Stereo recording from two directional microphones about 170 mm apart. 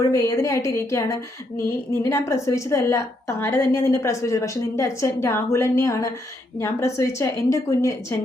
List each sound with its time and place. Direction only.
0.1 s a woman's voice: 15° left (ahead or behind)